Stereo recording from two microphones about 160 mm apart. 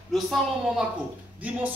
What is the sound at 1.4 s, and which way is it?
Speech, 10° right (ahead or behind).